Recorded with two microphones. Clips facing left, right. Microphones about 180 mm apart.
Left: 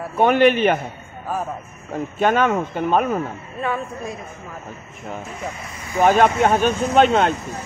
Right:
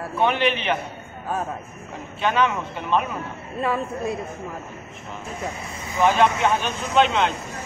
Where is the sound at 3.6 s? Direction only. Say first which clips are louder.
Right 1 dB; centre (ahead or behind).